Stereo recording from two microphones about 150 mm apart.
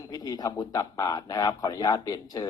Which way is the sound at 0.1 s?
25° left (ahead or behind).